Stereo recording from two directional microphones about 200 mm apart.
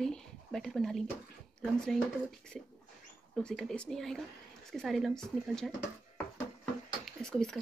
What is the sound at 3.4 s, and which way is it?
Speech, 5° left (ahead or behind).